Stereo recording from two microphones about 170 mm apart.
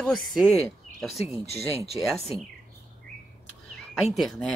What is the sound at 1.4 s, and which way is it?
Speech, 40° left (ahead or behind).